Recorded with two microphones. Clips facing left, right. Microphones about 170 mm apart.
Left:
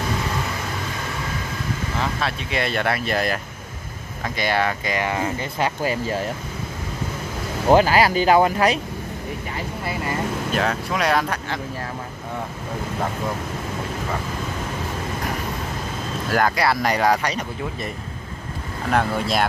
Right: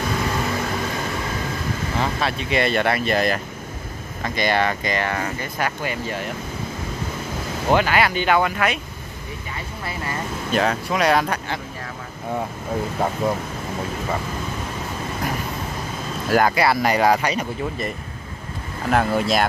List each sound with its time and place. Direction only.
2.2 s speech: centre (ahead or behind); by 5.7 s 20° left (ahead or behind)
5.8 s speech: 35° left (ahead or behind)
7.7 s speech: 35° left (ahead or behind)
10.5 s speech: centre (ahead or behind)
16.3 s speech: 5° right (ahead or behind)